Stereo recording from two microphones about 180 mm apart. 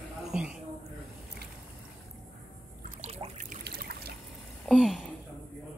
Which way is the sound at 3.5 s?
60° right (ahead or behind).